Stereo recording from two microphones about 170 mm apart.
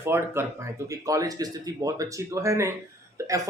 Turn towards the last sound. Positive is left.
turn(degrees=-20)  # may be behind; listen again after turning